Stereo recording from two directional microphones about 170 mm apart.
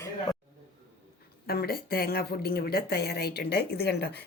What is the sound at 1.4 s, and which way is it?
Speech, 65° left (ahead or behind).